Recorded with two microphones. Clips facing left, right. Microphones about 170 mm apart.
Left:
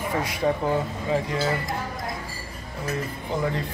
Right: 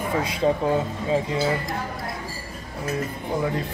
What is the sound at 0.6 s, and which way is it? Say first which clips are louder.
Speech: right 2 dB; 15° right (ahead or behind).